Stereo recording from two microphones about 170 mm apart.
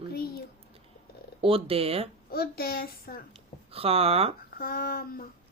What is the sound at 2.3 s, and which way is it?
Speech, 65° left (ahead or behind).